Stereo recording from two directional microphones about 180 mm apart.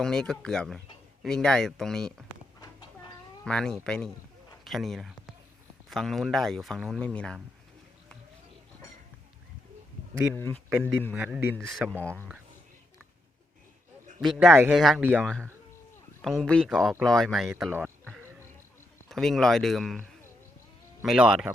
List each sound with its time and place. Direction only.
0.0 s speech: 5° left (ahead or behind)
2.6 s a sound: 25° left (ahead or behind)
3.4 s speech: 5° left (ahead or behind)
10.3 s speech: 15° left (ahead or behind)
11.1 s speech: 5° right (ahead or behind)
11.6 s speech: centre (ahead or behind)
14.2 s speech: centre (ahead or behind)
15.2 s speech: 5° left (ahead or behind)
19.0 s speech: centre (ahead or behind)